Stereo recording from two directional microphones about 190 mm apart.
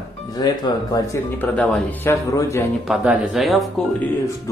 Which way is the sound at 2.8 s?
5° right (ahead or behind).